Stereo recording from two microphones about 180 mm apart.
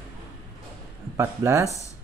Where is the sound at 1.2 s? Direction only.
15° right (ahead or behind).